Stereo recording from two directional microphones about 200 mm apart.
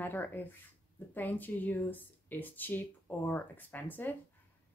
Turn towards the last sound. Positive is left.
turn(degrees=10)  # may be behind; listen again after turning